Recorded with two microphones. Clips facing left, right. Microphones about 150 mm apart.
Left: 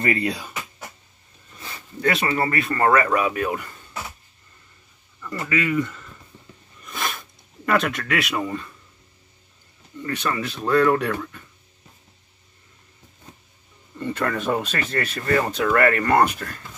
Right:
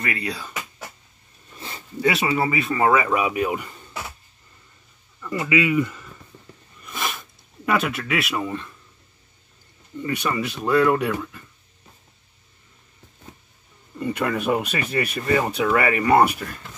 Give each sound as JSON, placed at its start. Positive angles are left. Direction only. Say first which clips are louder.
{"t": 0.0, "sound": "speech", "louder": "left 5 dB", "side_deg": 25}
{"t": 2.0, "sound": "speech", "louder": "right 1 dB", "side_deg": -5}
{"t": 5.2, "sound": "speech", "louder": "right 3 dB", "side_deg": -15}
{"t": 6.8, "sound": "a sound", "louder": "even", "side_deg": -5}
{"t": 10.0, "sound": "speech", "louder": "right 1 dB", "side_deg": -15}
{"t": 13.9, "sound": "speech", "louder": "right 1 dB", "side_deg": -10}